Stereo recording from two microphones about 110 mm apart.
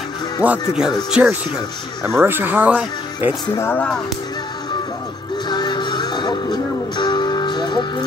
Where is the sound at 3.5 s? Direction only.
20° left (ahead or behind).